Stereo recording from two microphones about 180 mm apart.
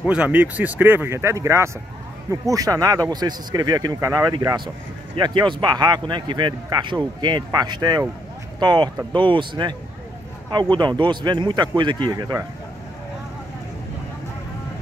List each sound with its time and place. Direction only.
0.0 s speech: 5° right (ahead or behind); by 9.8 s 25° right (ahead or behind)
10.8 s speech: 25° right (ahead or behind)